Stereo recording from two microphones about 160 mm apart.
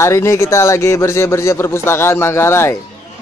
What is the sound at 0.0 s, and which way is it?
Speech, 15° left (ahead or behind).